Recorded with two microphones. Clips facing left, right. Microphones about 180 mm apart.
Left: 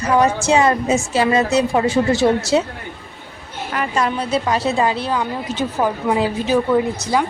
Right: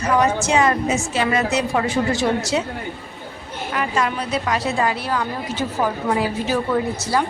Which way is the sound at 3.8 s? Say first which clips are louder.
Left 2 dB; 35° left (ahead or behind).